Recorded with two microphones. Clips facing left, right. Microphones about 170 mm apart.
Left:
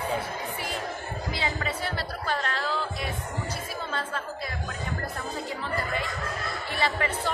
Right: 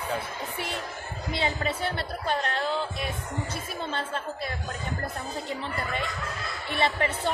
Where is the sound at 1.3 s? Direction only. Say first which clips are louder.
Right 4 dB; 25° right (ahead or behind).